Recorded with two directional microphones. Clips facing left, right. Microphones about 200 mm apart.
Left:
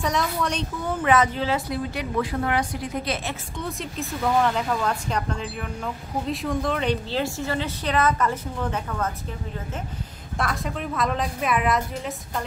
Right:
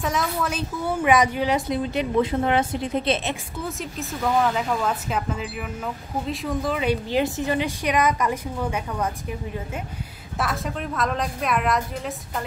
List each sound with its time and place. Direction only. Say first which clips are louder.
0.0 s a woman's voice: even; 5° right (ahead or behind); by 3.3 s 25° right (ahead or behind)
3.5 s a woman's voice: even; centre (ahead or behind)
10.4 s a woman's voice: right 1 dB; centre (ahead or behind)